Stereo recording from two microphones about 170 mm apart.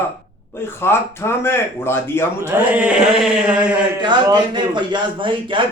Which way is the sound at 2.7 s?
10° right (ahead or behind).